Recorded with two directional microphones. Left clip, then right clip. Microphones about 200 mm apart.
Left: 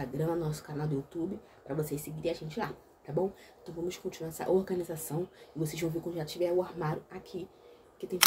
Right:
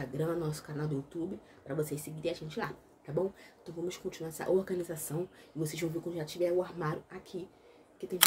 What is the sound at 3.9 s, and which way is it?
Speech, 5° right (ahead or behind).